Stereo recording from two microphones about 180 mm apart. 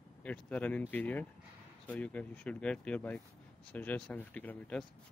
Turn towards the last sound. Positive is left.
turn(degrees=5)  # may be behind; listen again after turning